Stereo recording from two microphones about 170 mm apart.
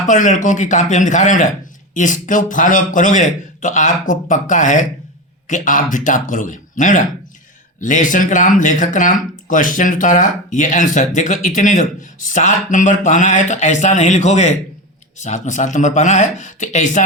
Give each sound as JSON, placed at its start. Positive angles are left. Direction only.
{"t": 0.1, "sound": "speech", "side_deg": 50}